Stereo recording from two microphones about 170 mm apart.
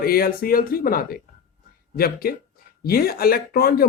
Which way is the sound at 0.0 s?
60° left (ahead or behind).